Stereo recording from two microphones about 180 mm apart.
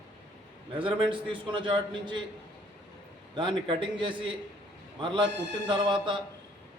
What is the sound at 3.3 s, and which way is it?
A man's voice, 25° right (ahead or behind).